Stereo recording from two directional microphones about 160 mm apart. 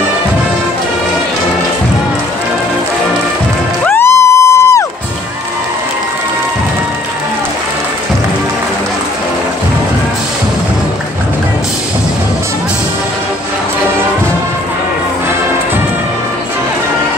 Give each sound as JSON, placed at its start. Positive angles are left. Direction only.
{"t": 3.8, "sound": "music", "side_deg": 15}